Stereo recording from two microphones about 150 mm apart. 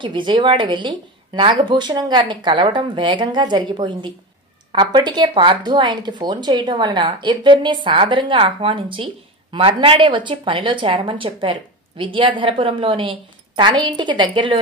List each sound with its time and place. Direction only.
0.0 s speech: 35° right (ahead or behind)